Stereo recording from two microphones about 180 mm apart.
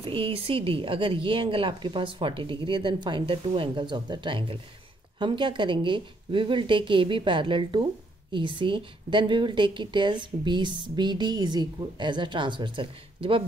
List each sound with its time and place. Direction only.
0.0 s speech: 30° right (ahead or behind)